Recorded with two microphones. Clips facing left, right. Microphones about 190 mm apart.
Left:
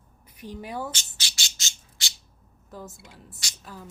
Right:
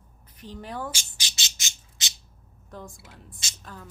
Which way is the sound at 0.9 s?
20° right (ahead or behind).